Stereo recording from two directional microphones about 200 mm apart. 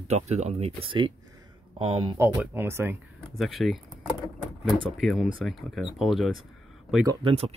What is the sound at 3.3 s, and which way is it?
Speech, centre (ahead or behind).